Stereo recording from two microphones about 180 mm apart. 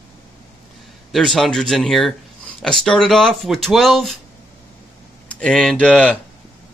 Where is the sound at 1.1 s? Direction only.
Centre (ahead or behind).